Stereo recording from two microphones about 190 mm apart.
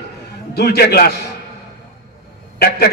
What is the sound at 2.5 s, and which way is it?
Speech, 55° left (ahead or behind).